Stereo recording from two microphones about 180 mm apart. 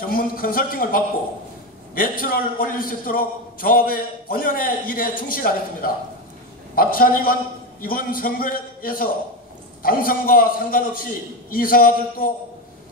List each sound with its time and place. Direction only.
0.1 s a man's voice: 50° left (ahead or behind)